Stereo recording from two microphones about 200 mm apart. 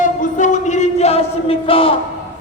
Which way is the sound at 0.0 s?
40° left (ahead or behind).